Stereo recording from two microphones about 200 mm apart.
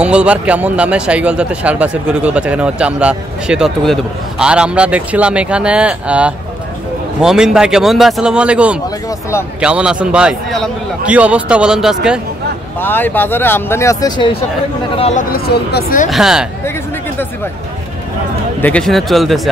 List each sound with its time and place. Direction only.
0.0 s speech: 5° right (ahead or behind)
12.8 s speech: 10° left (ahead or behind)
15.0 s speech: 30° left (ahead or behind)
15.3 s speech: 50° left (ahead or behind)
16.1 s speech: 5° right (ahead or behind)
18.6 s speech: 5° left (ahead or behind)